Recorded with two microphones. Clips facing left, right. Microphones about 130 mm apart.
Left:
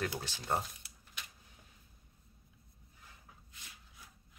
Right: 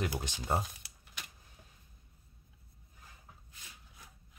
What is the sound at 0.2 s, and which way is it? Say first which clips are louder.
Speech: right 2 dB; 15° right (ahead or behind).